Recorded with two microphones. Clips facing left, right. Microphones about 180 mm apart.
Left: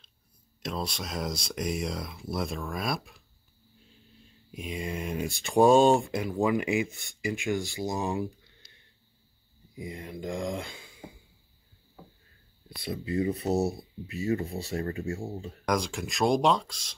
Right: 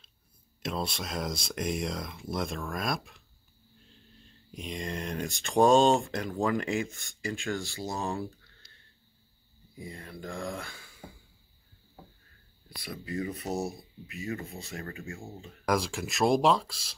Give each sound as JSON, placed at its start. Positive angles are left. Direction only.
{"t": 0.6, "sound": "speech", "side_deg": 0}
{"t": 12.6, "sound": "speech", "side_deg": 25}
{"t": 15.6, "sound": "speech", "side_deg": 0}